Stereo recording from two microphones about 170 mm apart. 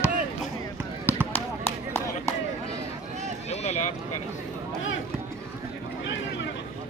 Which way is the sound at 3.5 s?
40° left (ahead or behind).